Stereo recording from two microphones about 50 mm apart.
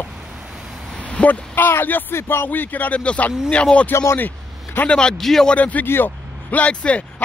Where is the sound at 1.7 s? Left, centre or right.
Left.